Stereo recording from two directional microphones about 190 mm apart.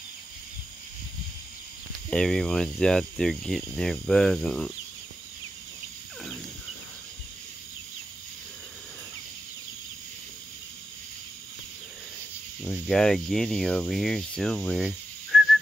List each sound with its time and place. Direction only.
2.0 s speech: 5° left (ahead or behind)
12.6 s speech: 5° left (ahead or behind)